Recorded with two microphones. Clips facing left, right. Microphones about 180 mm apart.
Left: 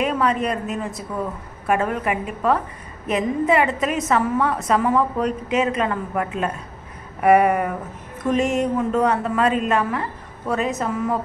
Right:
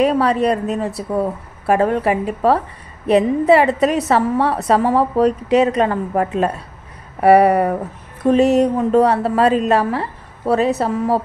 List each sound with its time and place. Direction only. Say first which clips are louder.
0.0 s a woman's voice: right 6 dB; 35° right (ahead or behind)